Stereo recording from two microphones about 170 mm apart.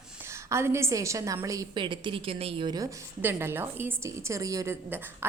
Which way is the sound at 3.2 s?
15° right (ahead or behind).